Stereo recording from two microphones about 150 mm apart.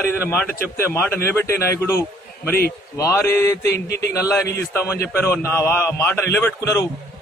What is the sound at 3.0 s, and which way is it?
Mantra, 15° left (ahead or behind).